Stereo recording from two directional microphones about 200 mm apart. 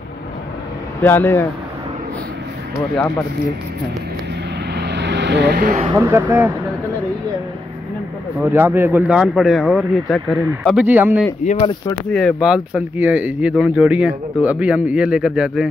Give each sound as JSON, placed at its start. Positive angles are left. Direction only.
{"t": 1.0, "sound": "speech", "side_deg": 10}
{"t": 4.7, "sound": "vehicle", "side_deg": -60}
{"t": 5.9, "sound": "speech", "side_deg": -10}
{"t": 8.4, "sound": "speech", "side_deg": -10}
{"t": 12.1, "sound": "speech", "side_deg": 0}